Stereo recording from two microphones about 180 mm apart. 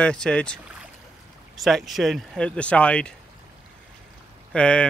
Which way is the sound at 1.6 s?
Centre (ahead or behind).